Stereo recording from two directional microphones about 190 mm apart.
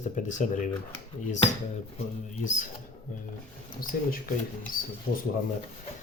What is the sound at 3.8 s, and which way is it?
Speech, 50° left (ahead or behind).